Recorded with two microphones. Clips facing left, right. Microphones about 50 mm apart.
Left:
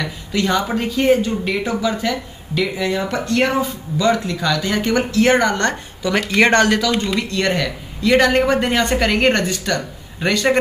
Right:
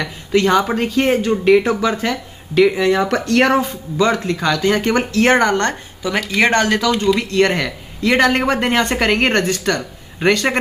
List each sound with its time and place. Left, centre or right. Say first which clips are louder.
0.0 s speech: right 5 dB; right
3.5 s speech: right 3 dB; right; by 6.8 s centre
7.2 s speech: right 3 dB; right